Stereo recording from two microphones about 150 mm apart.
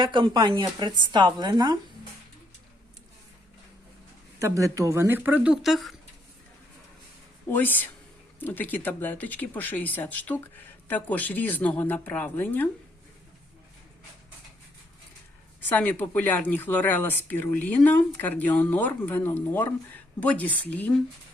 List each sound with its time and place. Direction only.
0.0 s speech: 30° right (ahead or behind)
4.4 s speech: 20° right (ahead or behind); by 6.0 s centre (ahead or behind)
7.5 s speech: 10° left (ahead or behind)
15.7 s speech: 10° left (ahead or behind)